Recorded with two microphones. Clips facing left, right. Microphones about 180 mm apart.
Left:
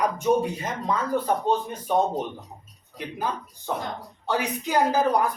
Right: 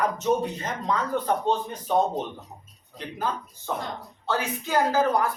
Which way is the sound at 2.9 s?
15° left (ahead or behind).